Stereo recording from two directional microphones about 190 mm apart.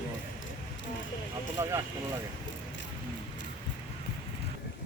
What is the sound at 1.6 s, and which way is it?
Speech, 15° right (ahead or behind).